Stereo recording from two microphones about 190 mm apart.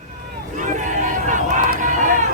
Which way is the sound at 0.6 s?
40° right (ahead or behind).